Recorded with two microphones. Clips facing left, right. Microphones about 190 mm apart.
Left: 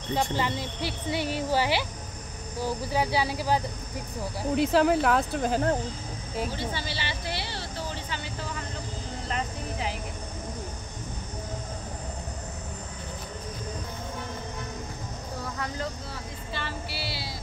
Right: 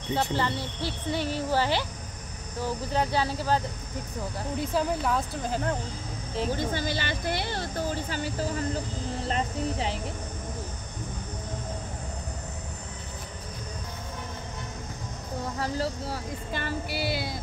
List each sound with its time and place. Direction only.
0.1 s speech: 15° left (ahead or behind)
4.6 s speech: 75° left (ahead or behind)
5.5 s speech: 40° left (ahead or behind)
6.5 s speech: 45° right (ahead or behind)
15.6 s speech: 35° right (ahead or behind)
16.5 s speech: 50° right (ahead or behind)